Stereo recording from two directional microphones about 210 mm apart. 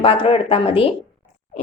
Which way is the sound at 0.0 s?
25° left (ahead or behind).